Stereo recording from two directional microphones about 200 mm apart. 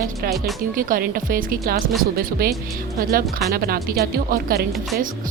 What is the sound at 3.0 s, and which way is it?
Speech, 45° right (ahead or behind).